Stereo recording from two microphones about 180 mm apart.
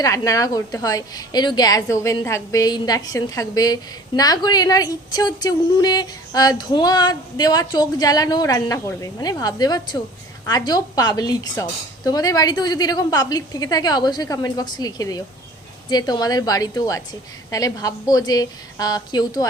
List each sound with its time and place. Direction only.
0.0 s a woman's voice: 20° left (ahead or behind)